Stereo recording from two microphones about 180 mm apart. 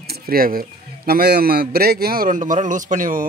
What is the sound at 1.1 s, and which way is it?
A man's voice, 60° right (ahead or behind).